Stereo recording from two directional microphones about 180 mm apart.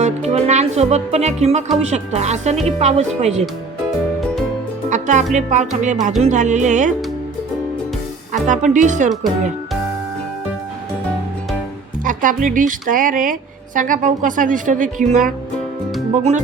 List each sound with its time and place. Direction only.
0.0 s music: 35° right (ahead or behind)
1.7 s speech: 35° right (ahead or behind)
4.9 s a woman's voice: 40° right (ahead or behind)
8.3 s a woman's voice: 45° right (ahead or behind)
12.0 s a woman's voice: 45° right (ahead or behind)